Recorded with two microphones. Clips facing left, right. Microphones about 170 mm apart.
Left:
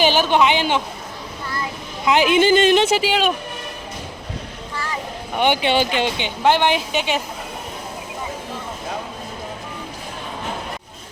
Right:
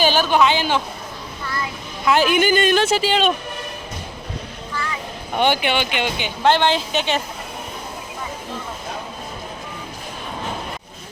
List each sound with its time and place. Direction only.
0.0 s a woman's voice: 20° left (ahead or behind)
2.0 s a woman's voice: 20° left (ahead or behind)
4.7 s vehicle: 35° left (ahead or behind)
5.5 s a woman's voice: 25° left (ahead or behind)
6.4 s a woman's voice: 15° left (ahead or behind)